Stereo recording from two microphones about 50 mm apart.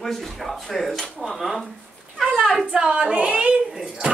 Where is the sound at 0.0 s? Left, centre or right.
Centre.